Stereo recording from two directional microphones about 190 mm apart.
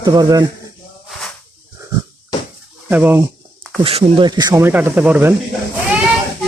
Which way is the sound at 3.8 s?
30° right (ahead or behind).